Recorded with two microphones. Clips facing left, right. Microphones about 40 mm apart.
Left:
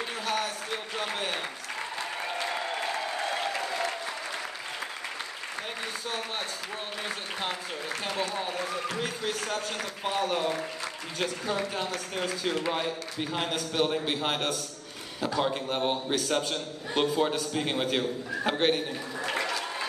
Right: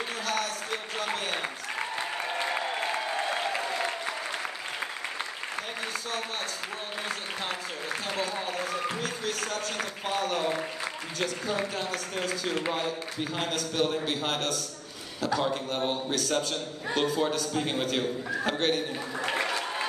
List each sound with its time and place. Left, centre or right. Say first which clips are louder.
2.3 s applause: right 1 dB; right
8.4 s speech: even; centre
9.0 s speech: even; centre
13.4 s a man's voice: even; centre
19.2 s applause: right 1 dB; right